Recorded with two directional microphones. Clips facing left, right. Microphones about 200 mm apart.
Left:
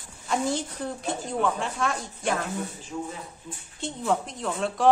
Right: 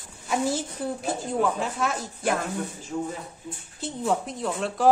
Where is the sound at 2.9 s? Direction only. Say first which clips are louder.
Right 4 dB; 50° right (ahead or behind).